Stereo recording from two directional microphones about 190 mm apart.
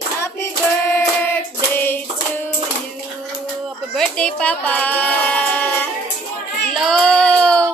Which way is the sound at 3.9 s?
5° left (ahead or behind).